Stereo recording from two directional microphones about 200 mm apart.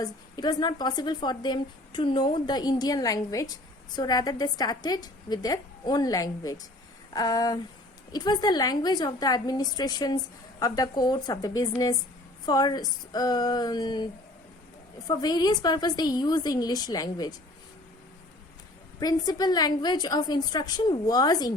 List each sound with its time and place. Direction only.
0.0 s a woman's voice: 20° left (ahead or behind)
18.9 s a woman's voice: 20° left (ahead or behind)